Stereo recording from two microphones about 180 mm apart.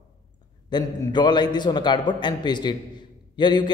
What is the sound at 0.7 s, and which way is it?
A man's voice, 25° left (ahead or behind).